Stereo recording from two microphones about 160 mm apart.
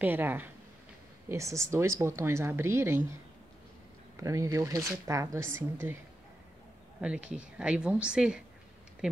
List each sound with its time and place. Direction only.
0.0 s speech: 10° right (ahead or behind)
4.2 s speech: 20° right (ahead or behind)
7.0 s speech: 5° right (ahead or behind)